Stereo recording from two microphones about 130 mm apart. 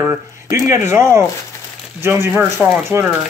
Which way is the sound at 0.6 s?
20° right (ahead or behind).